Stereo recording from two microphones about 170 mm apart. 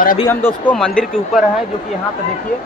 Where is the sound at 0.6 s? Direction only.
5° left (ahead or behind).